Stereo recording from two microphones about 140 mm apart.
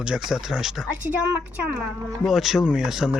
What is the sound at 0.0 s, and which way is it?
Speech, 5° right (ahead or behind).